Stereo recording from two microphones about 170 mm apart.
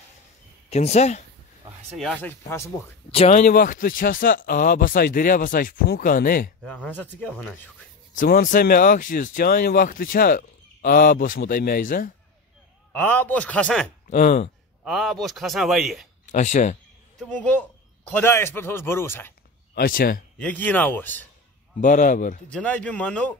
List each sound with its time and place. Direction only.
0.7 s speech: 40° left (ahead or behind)
2.0 s a man's voice: 5° left (ahead or behind)
3.1 s speech: 40° left (ahead or behind); by 6.5 s 60° left (ahead or behind)
6.6 s a man's voice: 10° left (ahead or behind)
8.2 s speech: 50° left (ahead or behind)
12.9 s a man's voice: 10° left (ahead or behind)
14.1 s speech: 50° left (ahead or behind)
14.9 s speech: centre (ahead or behind)
16.3 s speech: 45° left (ahead or behind)
17.2 s a man's voice: 5° left (ahead or behind)
19.7 s speech: 60° left (ahead or behind)
20.3 s a man's voice: 10° left (ahead or behind)
21.8 s speech: 50° left (ahead or behind)
22.5 s a man's voice: 5° left (ahead or behind)